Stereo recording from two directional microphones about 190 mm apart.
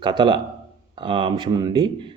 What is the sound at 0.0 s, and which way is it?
A man's voice, 25° right (ahead or behind).